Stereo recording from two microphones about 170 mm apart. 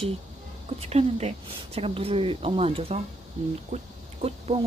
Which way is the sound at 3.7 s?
40° right (ahead or behind).